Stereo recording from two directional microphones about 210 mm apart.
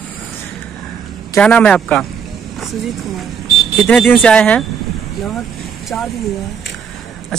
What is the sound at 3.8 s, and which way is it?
Speech, 5° left (ahead or behind).